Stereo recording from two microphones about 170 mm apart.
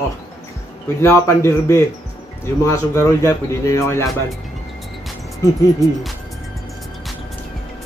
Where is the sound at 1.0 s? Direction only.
15° left (ahead or behind).